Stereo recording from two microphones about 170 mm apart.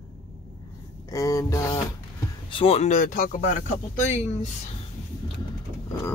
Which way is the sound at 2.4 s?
35° left (ahead or behind).